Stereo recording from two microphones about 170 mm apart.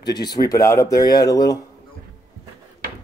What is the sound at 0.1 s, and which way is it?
Speech, 25° left (ahead or behind).